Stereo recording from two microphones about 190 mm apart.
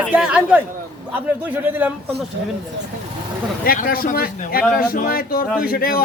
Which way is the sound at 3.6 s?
50° left (ahead or behind).